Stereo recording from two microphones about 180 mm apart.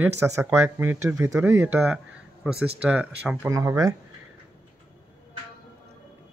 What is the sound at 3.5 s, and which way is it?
Speech, 20° right (ahead or behind).